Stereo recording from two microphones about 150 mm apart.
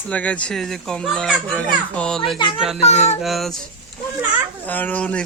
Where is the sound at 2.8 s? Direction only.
45° left (ahead or behind).